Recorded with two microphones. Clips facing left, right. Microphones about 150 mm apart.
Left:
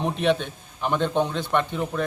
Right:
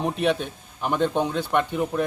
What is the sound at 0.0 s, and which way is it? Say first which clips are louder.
A man's voice: left 1 dB; 5° right (ahead or behind).